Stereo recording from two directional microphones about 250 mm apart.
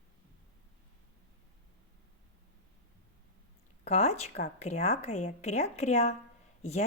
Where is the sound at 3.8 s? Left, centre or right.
Left.